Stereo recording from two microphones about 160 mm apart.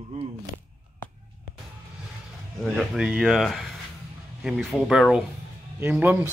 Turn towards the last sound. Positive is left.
turn(degrees=-15)  # may be behind; listen again after turning